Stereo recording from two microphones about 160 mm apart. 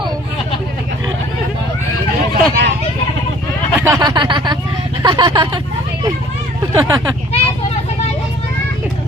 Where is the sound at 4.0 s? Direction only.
25° right (ahead or behind).